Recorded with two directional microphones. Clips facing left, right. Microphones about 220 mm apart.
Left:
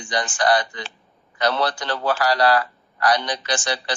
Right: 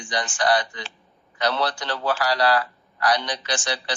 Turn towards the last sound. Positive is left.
turn(degrees=50)  # may be behind; listen again after turning